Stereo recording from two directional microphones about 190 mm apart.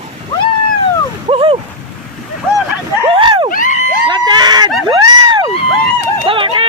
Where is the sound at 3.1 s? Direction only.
30° right (ahead or behind).